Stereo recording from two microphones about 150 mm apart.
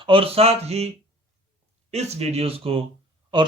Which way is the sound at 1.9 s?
45° right (ahead or behind).